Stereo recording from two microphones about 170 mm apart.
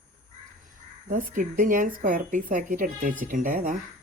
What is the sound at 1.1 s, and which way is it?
Speech, 50° right (ahead or behind).